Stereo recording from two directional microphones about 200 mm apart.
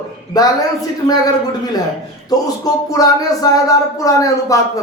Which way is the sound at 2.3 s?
20° left (ahead or behind).